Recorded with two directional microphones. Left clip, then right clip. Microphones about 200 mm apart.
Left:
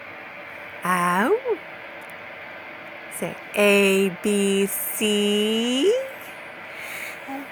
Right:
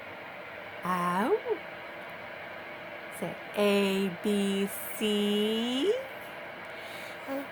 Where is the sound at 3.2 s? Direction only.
25° left (ahead or behind).